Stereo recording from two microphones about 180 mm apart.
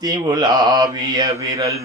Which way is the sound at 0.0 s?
20° right (ahead or behind).